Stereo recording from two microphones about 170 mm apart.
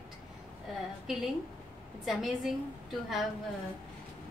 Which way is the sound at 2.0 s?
Centre (ahead or behind).